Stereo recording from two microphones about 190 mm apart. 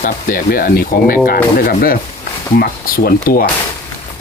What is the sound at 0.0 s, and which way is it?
Speech, 45° left (ahead or behind).